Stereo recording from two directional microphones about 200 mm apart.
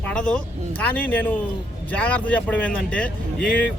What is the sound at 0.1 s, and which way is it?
A man's voice, 5° left (ahead or behind).